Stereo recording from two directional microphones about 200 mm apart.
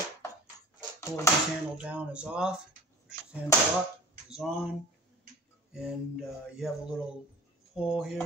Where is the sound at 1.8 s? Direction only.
5° right (ahead or behind).